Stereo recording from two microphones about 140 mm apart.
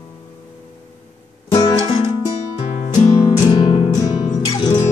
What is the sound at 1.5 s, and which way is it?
Music, 30° left (ahead or behind).